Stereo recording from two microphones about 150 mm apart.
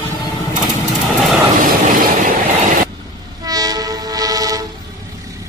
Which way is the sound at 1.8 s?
65° right (ahead or behind).